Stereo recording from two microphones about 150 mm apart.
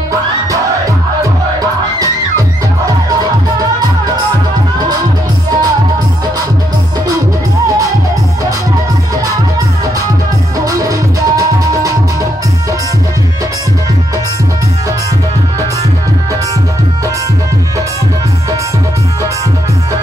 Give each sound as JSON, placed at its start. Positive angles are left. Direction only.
{"t": 10.6, "sound": "music", "side_deg": -20}